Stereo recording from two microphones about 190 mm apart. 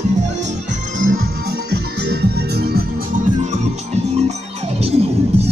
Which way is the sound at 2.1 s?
55° right (ahead or behind).